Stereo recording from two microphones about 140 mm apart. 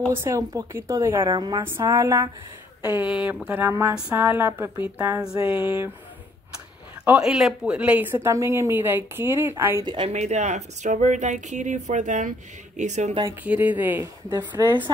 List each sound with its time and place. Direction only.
0.1 s speech: 20° right (ahead or behind)
1.2 s a woman's voice: 30° right (ahead or behind)
1.6 s speech: 20° right (ahead or behind)
2.8 s a woman's voice: 10° right (ahead or behind)
7.1 s a woman's voice: 5° right (ahead or behind)
10.0 s speech: 55° right (ahead or behind)
13.4 s a woman's voice: 10° right (ahead or behind)